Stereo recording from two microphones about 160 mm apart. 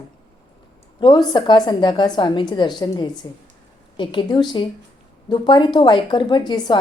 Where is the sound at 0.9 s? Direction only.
30° left (ahead or behind).